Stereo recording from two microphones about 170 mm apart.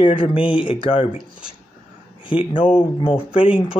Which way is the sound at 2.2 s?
30° left (ahead or behind).